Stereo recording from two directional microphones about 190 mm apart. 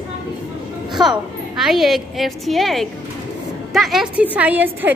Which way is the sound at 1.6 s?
Centre (ahead or behind).